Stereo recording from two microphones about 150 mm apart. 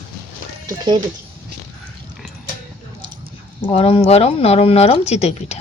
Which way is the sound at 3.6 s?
40° left (ahead or behind).